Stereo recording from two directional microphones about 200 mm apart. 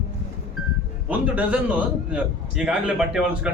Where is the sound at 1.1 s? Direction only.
5° right (ahead or behind).